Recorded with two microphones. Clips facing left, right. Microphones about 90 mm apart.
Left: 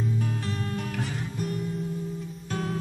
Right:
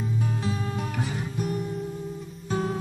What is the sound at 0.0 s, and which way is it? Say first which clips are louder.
Music: right 1 dB; 10° right (ahead or behind).